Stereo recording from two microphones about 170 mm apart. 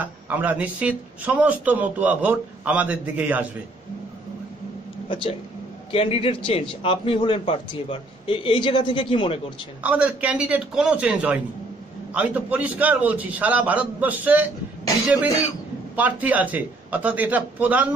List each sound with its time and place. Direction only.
0.0 s speech: 10° right (ahead or behind)
5.9 s a man's voice: 35° left (ahead or behind)
9.8 s speech: 5° right (ahead or behind)
16.0 s speech: 10° right (ahead or behind)